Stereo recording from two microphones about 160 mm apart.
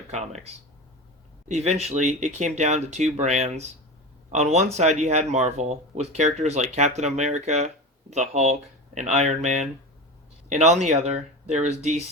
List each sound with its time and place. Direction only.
0.1 s speech: 45° right (ahead or behind)